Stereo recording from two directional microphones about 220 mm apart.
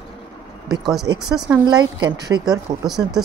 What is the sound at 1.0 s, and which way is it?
A woman's voice, 15° right (ahead or behind).